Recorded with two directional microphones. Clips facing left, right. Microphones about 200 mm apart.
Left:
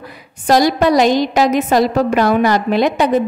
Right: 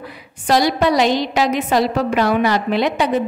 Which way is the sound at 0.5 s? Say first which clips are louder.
Left 3 dB; 45° left (ahead or behind).